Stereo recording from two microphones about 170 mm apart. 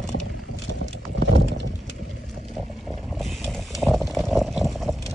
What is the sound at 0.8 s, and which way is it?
Clip-clop, 90° right.